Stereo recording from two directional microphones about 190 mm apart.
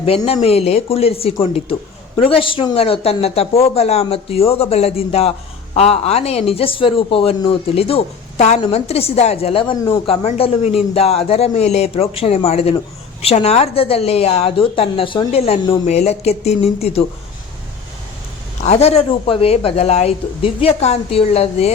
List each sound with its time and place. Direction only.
0.3 s a woman's voice: 30° left (ahead or behind)
18.6 s a woman's voice: 35° left (ahead or behind)